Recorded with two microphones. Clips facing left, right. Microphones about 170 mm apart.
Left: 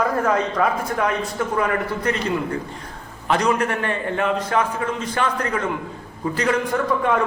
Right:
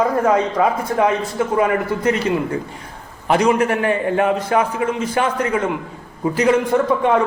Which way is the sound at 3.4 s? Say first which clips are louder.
Right 5 dB; 15° right (ahead or behind).